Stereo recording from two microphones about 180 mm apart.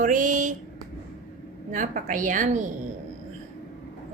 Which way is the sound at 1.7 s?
45° right (ahead or behind).